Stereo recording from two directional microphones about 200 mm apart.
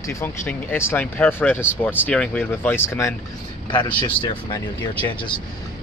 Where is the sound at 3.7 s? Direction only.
25° left (ahead or behind).